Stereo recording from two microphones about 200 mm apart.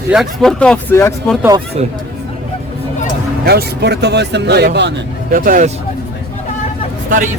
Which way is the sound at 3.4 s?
55° right (ahead or behind).